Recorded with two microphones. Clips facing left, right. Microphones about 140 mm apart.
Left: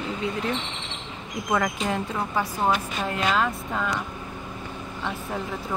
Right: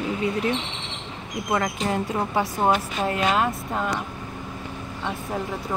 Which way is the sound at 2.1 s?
25° right (ahead or behind).